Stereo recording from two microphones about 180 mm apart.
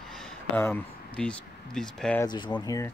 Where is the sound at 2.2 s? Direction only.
25° left (ahead or behind).